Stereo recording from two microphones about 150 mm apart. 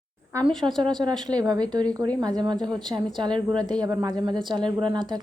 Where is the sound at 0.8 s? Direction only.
30° right (ahead or behind).